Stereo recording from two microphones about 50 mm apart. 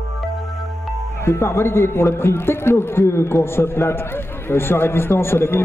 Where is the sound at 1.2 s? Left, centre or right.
Left.